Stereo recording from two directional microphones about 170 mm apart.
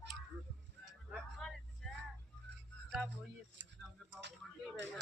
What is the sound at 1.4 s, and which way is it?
Vehicle, 5° left (ahead or behind).